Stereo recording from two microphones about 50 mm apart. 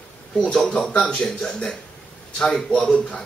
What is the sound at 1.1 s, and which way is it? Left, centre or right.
A man's voice, centre.